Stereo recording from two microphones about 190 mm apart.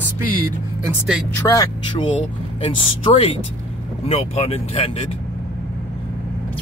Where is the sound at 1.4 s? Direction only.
15° left (ahead or behind).